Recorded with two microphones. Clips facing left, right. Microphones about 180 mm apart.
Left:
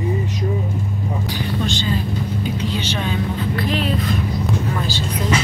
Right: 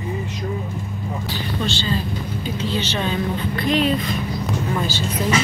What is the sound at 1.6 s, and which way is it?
Vehicle, 15° left (ahead or behind).